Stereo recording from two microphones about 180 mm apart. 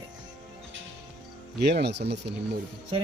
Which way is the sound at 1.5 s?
65° right (ahead or behind).